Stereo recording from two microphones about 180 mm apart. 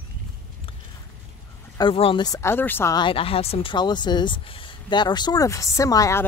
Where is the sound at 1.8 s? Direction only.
30° left (ahead or behind); by 3.0 s 10° left (ahead or behind).